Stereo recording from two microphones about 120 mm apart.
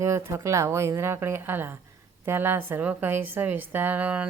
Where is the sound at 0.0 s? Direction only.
25° right (ahead or behind).